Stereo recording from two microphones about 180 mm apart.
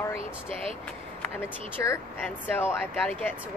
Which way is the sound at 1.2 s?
10° left (ahead or behind).